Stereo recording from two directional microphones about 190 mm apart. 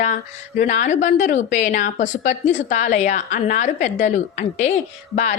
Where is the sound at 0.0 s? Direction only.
40° left (ahead or behind).